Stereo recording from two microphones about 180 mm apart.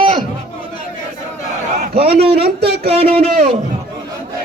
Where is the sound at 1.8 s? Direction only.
55° right (ahead or behind).